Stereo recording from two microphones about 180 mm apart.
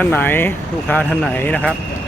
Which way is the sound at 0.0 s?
10° left (ahead or behind).